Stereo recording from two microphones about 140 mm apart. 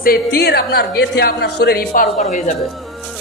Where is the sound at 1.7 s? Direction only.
75° left (ahead or behind).